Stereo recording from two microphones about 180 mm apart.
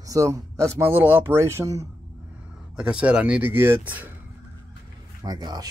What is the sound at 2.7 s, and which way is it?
Speech, 5° right (ahead or behind).